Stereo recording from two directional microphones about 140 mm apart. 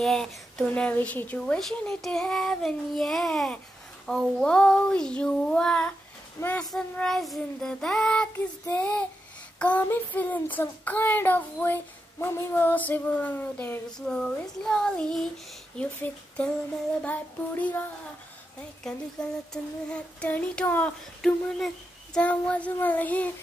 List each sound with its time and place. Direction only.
0.0 s a woman's voice: 5° left (ahead or behind)
6.4 s speech: 20° left (ahead or behind)
6.7 s a woman's voice: centre (ahead or behind)
8.6 s child singing: 15° left (ahead or behind)
18.9 s child singing: 5° left (ahead or behind)